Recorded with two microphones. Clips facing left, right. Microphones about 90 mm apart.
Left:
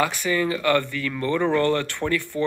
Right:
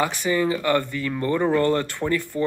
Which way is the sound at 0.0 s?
25° right (ahead or behind).